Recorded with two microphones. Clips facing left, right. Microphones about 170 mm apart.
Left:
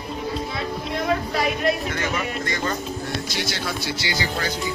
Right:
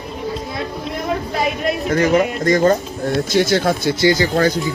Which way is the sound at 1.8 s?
40° right (ahead or behind).